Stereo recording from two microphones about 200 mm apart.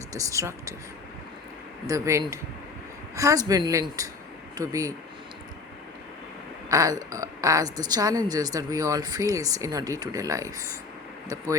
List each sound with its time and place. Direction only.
0.1 s a woman's voice: 15° right (ahead or behind)
1.9 s a woman's voice: 15° right (ahead or behind)
6.7 s a woman's voice: 15° right (ahead or behind)